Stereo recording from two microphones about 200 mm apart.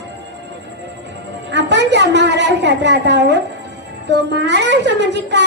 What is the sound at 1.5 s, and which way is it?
A woman's voice, 60° right (ahead or behind).